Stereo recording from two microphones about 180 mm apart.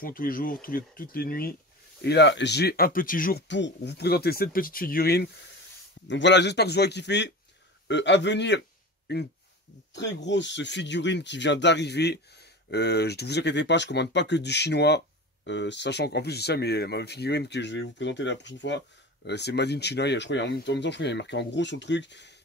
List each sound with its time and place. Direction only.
0.0 s speech: 50° left (ahead or behind)
2.0 s speech: 70° left (ahead or behind); by 3.4 s 50° left (ahead or behind)
3.4 s speech: 85° left; by 5.3 s 60° left (ahead or behind)
6.0 s a man's voice: 80° left
15.4 s speech: 80° left
19.2 s speech: 70° left (ahead or behind)